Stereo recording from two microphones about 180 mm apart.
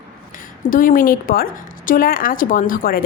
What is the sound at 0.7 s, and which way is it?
A woman's voice, 50° left (ahead or behind).